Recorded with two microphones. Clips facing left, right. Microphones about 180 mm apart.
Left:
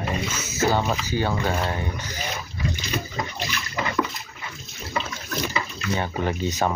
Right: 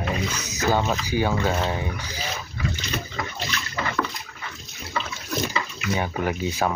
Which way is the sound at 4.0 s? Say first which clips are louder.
Left 3 dB; 15° left (ahead or behind).